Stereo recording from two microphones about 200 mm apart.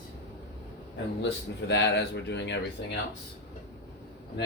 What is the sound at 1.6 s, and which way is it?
Speech, 60° left (ahead or behind).